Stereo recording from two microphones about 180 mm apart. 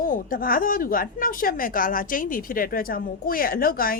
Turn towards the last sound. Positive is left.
turn(degrees=55)  # may be behind; listen again after turning